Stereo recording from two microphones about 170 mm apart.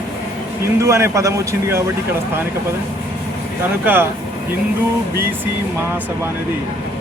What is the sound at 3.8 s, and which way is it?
Speech, 10° right (ahead or behind).